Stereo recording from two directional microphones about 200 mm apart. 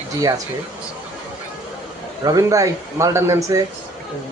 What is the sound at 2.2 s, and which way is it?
Speech, 15° right (ahead or behind).